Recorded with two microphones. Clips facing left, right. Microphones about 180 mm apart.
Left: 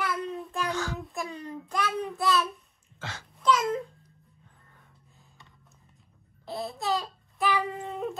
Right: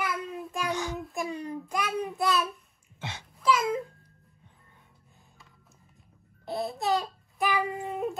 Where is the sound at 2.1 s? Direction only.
20° right (ahead or behind).